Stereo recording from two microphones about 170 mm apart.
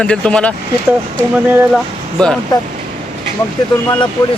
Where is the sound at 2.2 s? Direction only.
5° left (ahead or behind).